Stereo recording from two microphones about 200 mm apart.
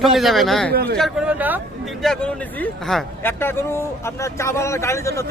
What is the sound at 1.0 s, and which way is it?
Speech, centre (ahead or behind).